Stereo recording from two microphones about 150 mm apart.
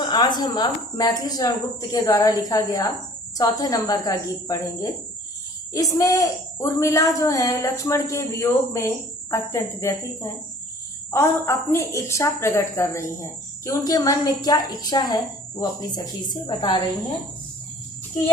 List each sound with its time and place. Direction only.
0.0 s a woman's voice: 30° left (ahead or behind)
11.1 s a woman's voice: 15° left (ahead or behind)